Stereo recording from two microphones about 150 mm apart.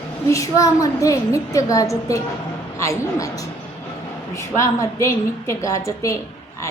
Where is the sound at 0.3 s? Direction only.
20° left (ahead or behind).